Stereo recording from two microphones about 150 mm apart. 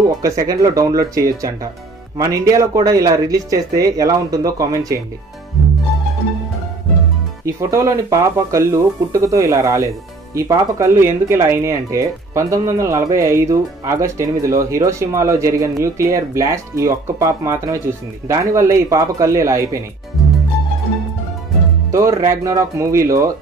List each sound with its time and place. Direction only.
0.2 s speech: 20° right (ahead or behind)
7.4 s speech: 20° right (ahead or behind)
21.9 s speech: 20° right (ahead or behind)